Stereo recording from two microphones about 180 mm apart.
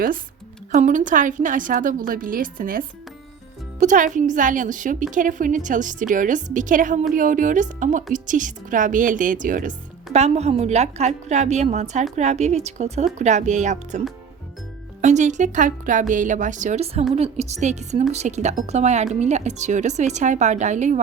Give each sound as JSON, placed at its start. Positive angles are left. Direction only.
{"t": 0.7, "sound": "a woman's voice", "side_deg": -40}
{"t": 15.0, "sound": "a woman's voice", "side_deg": -40}